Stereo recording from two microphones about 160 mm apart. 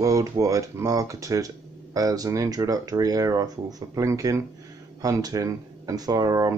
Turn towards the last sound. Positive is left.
turn(degrees=-20)  # may be behind; listen again after turning